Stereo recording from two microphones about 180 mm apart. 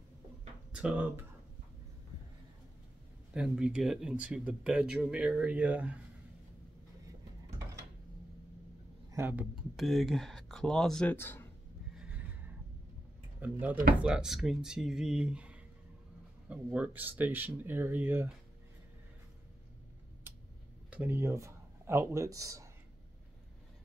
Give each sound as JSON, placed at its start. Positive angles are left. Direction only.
{"t": 0.7, "sound": "speech", "side_deg": -5}
{"t": 3.3, "sound": "speech", "side_deg": -5}
{"t": 9.1, "sound": "speech", "side_deg": -10}
{"t": 12.0, "sound": "neigh", "side_deg": -5}
{"t": 13.4, "sound": "speech", "side_deg": -10}
{"t": 20.9, "sound": "speech", "side_deg": -10}